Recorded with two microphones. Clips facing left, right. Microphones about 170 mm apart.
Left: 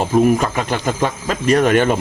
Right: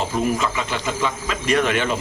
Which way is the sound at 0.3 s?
50° left (ahead or behind).